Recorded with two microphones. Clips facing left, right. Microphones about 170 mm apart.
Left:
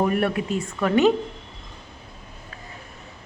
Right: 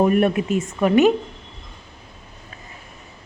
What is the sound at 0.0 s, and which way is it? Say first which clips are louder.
A woman's voice: right 5 dB; 20° right (ahead or behind).